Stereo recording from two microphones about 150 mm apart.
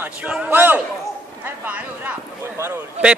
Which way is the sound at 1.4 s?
10° right (ahead or behind).